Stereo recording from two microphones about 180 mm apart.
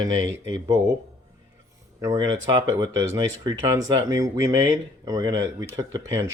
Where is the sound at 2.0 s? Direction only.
20° right (ahead or behind).